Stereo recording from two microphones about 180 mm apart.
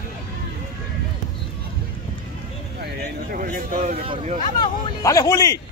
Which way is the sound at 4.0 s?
30° right (ahead or behind).